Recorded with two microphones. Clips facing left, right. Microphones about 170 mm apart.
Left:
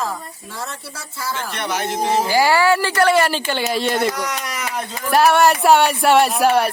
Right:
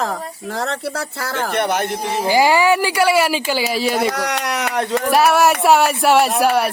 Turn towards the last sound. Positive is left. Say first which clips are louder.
# even
turn(degrees=0)  # may be behind; listen again after turning